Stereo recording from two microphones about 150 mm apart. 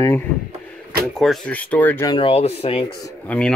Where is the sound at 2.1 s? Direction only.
40° left (ahead or behind).